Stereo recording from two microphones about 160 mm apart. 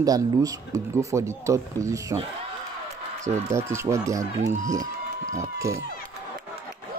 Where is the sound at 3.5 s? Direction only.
15° right (ahead or behind).